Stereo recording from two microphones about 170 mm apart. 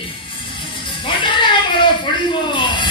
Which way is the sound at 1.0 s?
30° left (ahead or behind).